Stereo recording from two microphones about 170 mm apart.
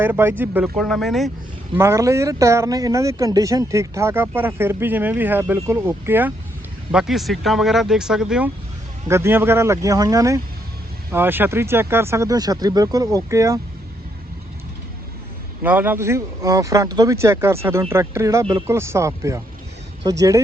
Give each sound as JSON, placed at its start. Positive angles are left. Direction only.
{"t": 0.0, "sound": "speech", "side_deg": -15}
{"t": 0.8, "sound": "speech", "side_deg": 0}
{"t": 1.7, "sound": "speech", "side_deg": -15}
{"t": 6.9, "sound": "speech", "side_deg": 0}
{"t": 9.0, "sound": "speech", "side_deg": -15}
{"t": 15.6, "sound": "speech", "side_deg": -10}